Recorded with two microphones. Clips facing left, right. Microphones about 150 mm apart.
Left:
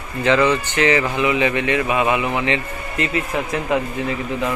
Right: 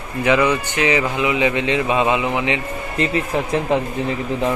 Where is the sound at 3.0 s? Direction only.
30° right (ahead or behind).